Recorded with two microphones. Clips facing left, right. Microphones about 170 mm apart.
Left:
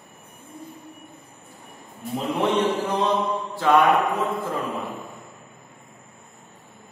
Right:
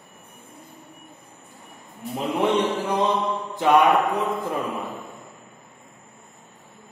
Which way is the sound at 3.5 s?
15° right (ahead or behind).